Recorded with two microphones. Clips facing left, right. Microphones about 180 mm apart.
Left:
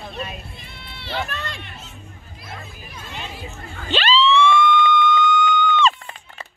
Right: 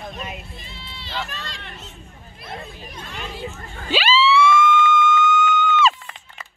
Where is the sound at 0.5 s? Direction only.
60° left (ahead or behind).